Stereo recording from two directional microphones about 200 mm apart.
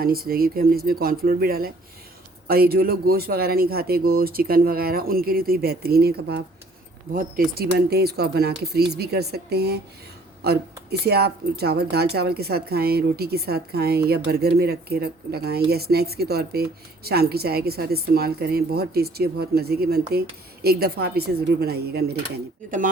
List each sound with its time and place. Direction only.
0.0 s a woman's voice: 50° right (ahead or behind)